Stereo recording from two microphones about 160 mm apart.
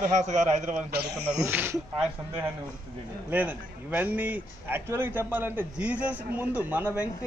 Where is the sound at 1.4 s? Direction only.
10° right (ahead or behind).